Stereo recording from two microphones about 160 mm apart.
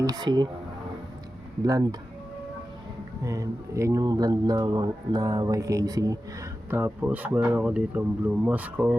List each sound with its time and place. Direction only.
0.0 s speech: 25° right (ahead or behind)
1.6 s speech: 25° right (ahead or behind)
3.2 s speech: 20° right (ahead or behind)